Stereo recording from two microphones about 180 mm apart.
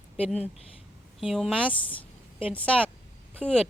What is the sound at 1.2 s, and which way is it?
Speech, centre (ahead or behind).